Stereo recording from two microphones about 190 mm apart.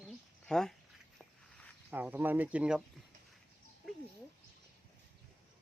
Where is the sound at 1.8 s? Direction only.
10° right (ahead or behind).